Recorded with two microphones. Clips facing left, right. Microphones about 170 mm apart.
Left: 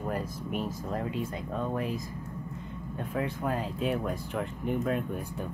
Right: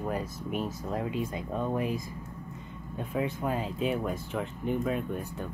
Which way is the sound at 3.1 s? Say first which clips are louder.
Right 1 dB; 5° right (ahead or behind).